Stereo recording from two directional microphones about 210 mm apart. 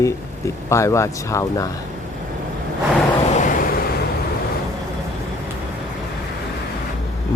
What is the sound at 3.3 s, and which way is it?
Vehicle, 40° left (ahead or behind).